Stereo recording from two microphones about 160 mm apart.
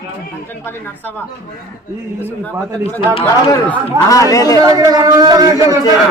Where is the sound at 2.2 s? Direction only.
10° left (ahead or behind).